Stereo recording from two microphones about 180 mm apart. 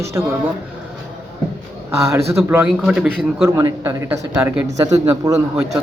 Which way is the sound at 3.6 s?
15° right (ahead or behind).